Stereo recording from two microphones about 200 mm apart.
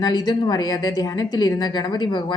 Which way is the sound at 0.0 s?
20° left (ahead or behind).